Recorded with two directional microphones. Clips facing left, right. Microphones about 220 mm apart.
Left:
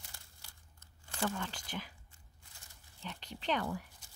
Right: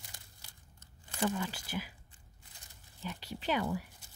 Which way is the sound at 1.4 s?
5° right (ahead or behind).